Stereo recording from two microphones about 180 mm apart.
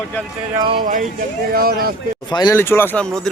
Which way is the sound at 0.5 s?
25° right (ahead or behind).